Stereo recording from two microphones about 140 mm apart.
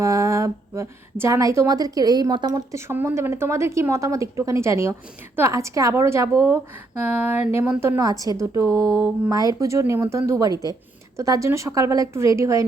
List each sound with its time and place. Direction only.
0.0 s a woman's voice: 25° right (ahead or behind)